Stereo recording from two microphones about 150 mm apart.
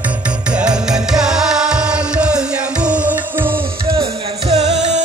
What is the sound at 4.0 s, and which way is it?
Music, 45° right (ahead or behind).